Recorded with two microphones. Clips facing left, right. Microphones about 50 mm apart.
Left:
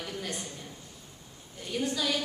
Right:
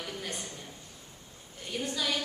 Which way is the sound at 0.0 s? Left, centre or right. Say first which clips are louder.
Left 2 dB; centre.